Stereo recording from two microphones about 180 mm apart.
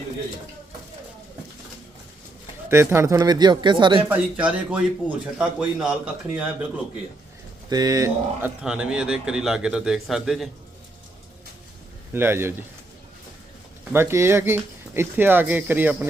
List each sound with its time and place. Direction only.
2.6 s speech: 15° right (ahead or behind)
4.1 s speech: 5° right (ahead or behind)
7.7 s speech: 20° right (ahead or behind); by 10.5 s centre (ahead or behind)
12.1 s speech: 15° right (ahead or behind)
13.9 s speech: 15° right (ahead or behind)